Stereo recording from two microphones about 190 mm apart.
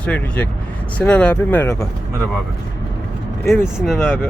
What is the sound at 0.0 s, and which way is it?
Speech, 5° left (ahead or behind).